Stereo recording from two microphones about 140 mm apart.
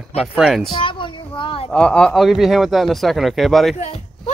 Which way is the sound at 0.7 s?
35° left (ahead or behind).